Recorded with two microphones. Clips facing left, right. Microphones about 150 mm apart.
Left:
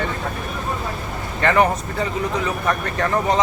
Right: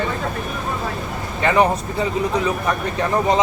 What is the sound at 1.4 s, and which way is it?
Speech, 15° right (ahead or behind).